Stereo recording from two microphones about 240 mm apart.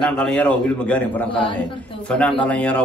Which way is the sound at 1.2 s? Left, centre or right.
Left.